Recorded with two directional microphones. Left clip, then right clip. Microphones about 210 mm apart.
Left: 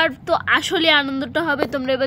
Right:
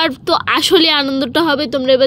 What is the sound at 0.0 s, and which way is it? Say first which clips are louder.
A woman's voice: right 4 dB; 20° right (ahead or behind).